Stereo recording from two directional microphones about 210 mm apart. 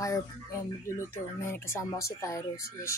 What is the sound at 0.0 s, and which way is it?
Speech, 15° left (ahead or behind).